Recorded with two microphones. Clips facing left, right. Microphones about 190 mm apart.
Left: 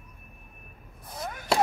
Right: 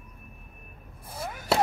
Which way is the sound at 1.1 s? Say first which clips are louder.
Even; 10° right (ahead or behind).